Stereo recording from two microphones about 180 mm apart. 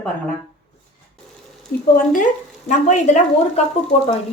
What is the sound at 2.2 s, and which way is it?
Speech, 45° left (ahead or behind).